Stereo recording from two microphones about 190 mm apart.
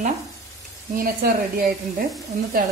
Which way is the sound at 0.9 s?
50° right (ahead or behind).